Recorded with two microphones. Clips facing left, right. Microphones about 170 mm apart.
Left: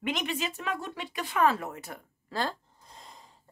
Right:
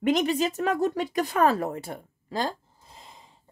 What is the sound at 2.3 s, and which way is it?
Speech, 15° right (ahead or behind).